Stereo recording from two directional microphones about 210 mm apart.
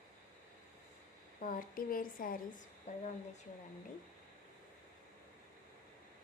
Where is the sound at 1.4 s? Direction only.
40° left (ahead or behind).